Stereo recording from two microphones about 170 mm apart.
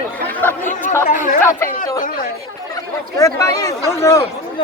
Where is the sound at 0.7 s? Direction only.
50° left (ahead or behind).